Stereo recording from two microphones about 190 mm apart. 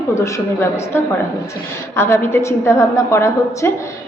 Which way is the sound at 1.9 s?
15° left (ahead or behind).